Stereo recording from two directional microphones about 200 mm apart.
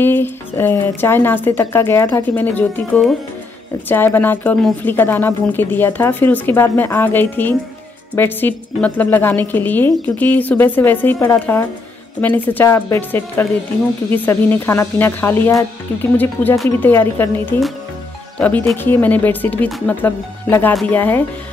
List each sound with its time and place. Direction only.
0.0 s speech: 10° left (ahead or behind)